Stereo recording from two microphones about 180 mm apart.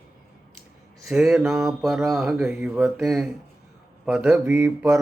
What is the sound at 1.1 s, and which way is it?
A man's voice, 5° right (ahead or behind).